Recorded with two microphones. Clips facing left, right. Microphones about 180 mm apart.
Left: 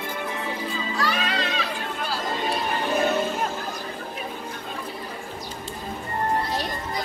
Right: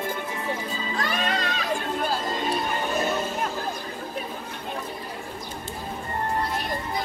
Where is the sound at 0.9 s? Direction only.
50° right (ahead or behind).